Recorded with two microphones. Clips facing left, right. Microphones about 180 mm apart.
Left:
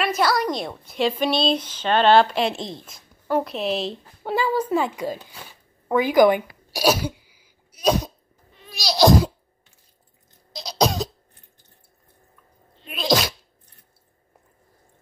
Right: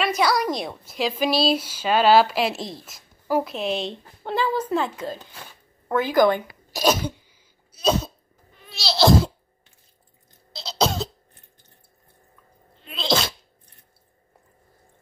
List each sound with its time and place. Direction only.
0.0 s a woman's voice: centre (ahead or behind)
5.9 s a sound: 15° left (ahead or behind)
10.5 s cough: 15° left (ahead or behind)
12.8 s sneeze: 10° left (ahead or behind)